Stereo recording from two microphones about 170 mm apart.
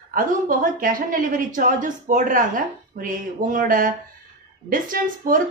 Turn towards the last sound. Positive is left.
turn(degrees=-55)  # may be behind; listen again after turning